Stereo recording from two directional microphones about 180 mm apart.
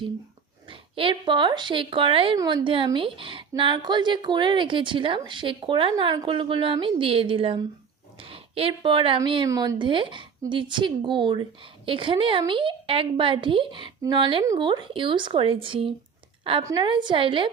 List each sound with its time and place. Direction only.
0.7 s a woman's voice: 30° right (ahead or behind)